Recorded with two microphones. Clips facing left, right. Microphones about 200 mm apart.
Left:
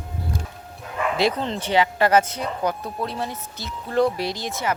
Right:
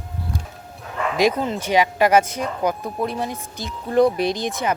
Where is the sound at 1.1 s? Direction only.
10° right (ahead or behind).